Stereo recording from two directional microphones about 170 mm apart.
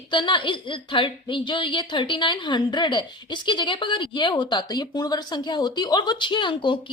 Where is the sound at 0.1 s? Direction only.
30° left (ahead or behind).